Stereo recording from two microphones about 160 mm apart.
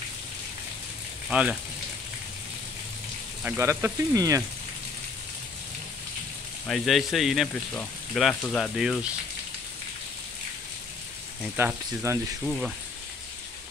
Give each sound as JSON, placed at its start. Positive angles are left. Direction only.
{"t": 1.3, "sound": "speech", "side_deg": -5}
{"t": 3.4, "sound": "speech", "side_deg": -15}
{"t": 6.7, "sound": "speech", "side_deg": 0}
{"t": 11.5, "sound": "speech", "side_deg": -15}
{"t": 12.4, "sound": "speech", "side_deg": 0}